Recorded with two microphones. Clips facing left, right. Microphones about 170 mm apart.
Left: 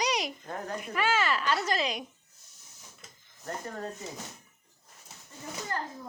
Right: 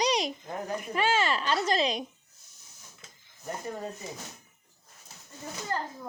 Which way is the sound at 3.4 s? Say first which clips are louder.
Right 1 dB; 10° right (ahead or behind).